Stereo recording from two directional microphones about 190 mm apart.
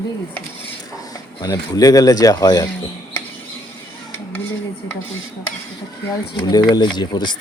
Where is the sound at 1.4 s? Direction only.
20° left (ahead or behind).